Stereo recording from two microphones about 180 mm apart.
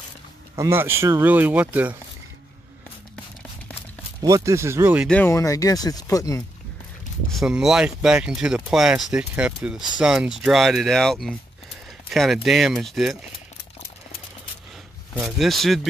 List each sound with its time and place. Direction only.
0.6 s speech: 15° right (ahead or behind)
4.2 s speech: 20° right (ahead or behind)
5.0 s speech: 10° left (ahead or behind)
7.2 s speech: centre (ahead or behind)
15.1 s speech: centre (ahead or behind)